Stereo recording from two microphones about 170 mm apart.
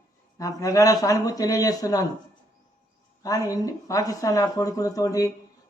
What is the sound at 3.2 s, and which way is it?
A man's voice, 20° left (ahead or behind).